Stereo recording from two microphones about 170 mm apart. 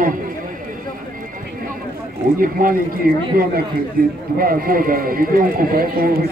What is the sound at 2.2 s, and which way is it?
A man's voice, 55° right (ahead or behind).